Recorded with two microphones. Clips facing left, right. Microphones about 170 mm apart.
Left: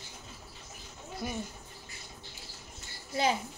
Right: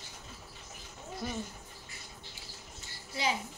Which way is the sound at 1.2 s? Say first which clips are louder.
Left 1 dB; 15° left (ahead or behind).